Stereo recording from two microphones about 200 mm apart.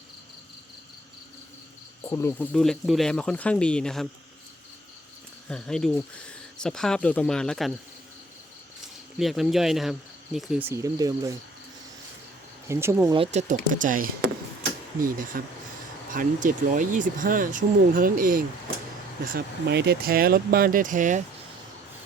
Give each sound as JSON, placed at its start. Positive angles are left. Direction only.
{"t": 2.0, "sound": "speech", "side_deg": 15}
{"t": 5.5, "sound": "speech", "side_deg": 5}
{"t": 9.1, "sound": "speech", "side_deg": 0}
{"t": 12.6, "sound": "speech", "side_deg": -15}
{"t": 13.1, "sound": "speech", "side_deg": -25}
{"t": 13.5, "sound": "speech", "side_deg": -40}